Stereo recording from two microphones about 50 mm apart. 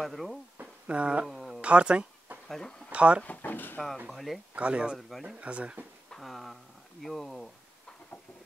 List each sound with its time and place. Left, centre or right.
0.0 s speech: centre
0.6 s a sound: right
1.2 s a sound: centre
1.6 s speech: right
2.4 s speech: centre
2.9 s speech: right
3.3 s speech: left
4.1 s speech: centre
4.6 s speech: right
6.0 s speech: centre